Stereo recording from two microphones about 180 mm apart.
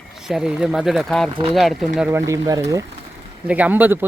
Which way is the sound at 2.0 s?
15° right (ahead or behind).